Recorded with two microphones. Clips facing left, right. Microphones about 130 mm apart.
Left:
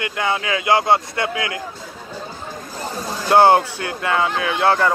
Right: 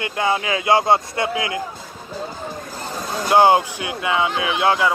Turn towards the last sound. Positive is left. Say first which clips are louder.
# left 1 dB
turn(degrees=-15)  # may be behind; listen again after turning